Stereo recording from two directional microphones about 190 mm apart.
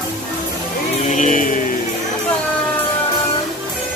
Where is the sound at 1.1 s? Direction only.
40° left (ahead or behind).